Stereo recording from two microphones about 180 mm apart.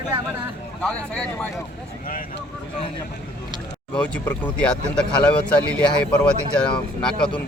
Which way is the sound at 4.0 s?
10° left (ahead or behind).